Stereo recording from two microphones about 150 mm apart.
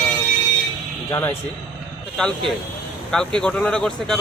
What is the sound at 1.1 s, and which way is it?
Speech, 15° left (ahead or behind).